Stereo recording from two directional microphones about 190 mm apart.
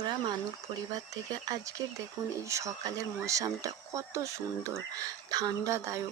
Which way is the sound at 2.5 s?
15° right (ahead or behind).